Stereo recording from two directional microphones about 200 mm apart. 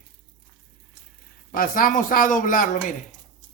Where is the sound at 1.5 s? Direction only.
45° left (ahead or behind).